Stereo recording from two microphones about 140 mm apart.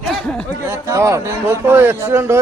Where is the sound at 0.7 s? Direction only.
20° right (ahead or behind).